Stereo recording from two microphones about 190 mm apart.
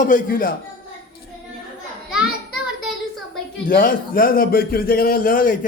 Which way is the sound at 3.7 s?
50° left (ahead or behind).